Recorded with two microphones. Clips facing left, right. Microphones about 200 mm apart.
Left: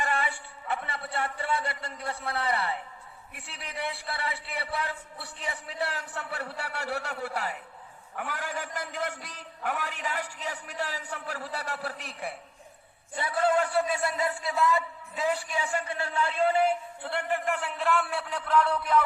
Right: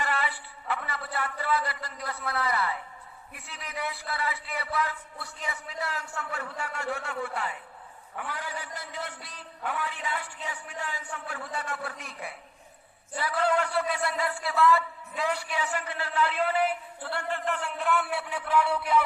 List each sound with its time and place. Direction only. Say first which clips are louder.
0.1 s music: even; 50° left (ahead or behind)
0.8 s a man's voice: left 1 dB; 25° left (ahead or behind)
16.4 s a man's voice: left 3 dB; 25° left (ahead or behind); by 19.0 s 10° right (ahead or behind)